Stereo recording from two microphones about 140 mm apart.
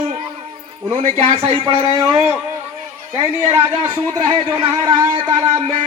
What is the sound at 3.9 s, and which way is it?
A man's voice, 30° right (ahead or behind).